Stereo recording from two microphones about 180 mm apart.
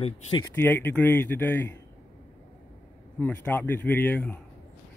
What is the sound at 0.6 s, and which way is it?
Speech, 10° left (ahead or behind).